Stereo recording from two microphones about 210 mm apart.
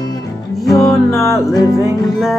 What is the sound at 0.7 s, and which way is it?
Music, 15° left (ahead or behind).